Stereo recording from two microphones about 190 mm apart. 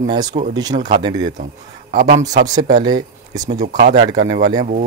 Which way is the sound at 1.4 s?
45° right (ahead or behind).